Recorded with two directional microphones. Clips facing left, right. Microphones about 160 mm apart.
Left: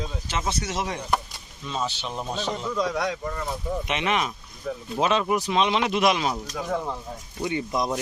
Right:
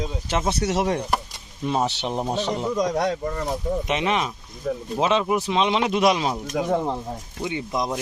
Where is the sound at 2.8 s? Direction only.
45° right (ahead or behind).